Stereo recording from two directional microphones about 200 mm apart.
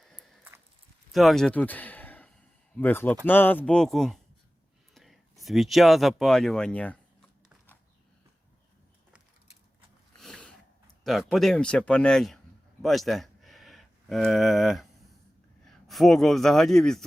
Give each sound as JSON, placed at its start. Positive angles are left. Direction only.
{"t": 0.0, "sound": "a sound", "side_deg": 5}
{"t": 1.1, "sound": "speech", "side_deg": 0}
{"t": 10.2, "sound": "sniff", "side_deg": 5}
{"t": 11.0, "sound": "speech", "side_deg": 0}
{"t": 12.8, "sound": "a sound", "side_deg": 0}
{"t": 15.6, "sound": "a man's voice", "side_deg": 0}